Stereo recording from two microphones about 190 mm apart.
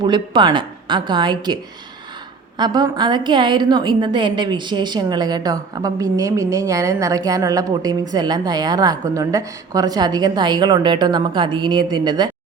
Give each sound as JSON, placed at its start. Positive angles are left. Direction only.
{"t": 0.0, "sound": "a woman's voice", "side_deg": -25}
{"t": 2.6, "sound": "a woman's voice", "side_deg": -20}